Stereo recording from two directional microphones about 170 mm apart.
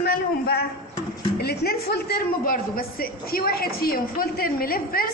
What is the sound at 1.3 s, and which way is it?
A man's voice, 70° left (ahead or behind).